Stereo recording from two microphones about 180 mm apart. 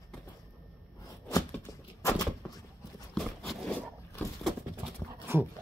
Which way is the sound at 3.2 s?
Centre (ahead or behind).